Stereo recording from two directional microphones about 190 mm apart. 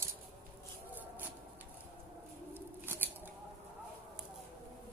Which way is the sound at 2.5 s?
10° right (ahead or behind).